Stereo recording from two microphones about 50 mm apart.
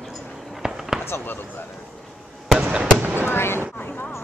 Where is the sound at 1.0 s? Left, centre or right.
Left.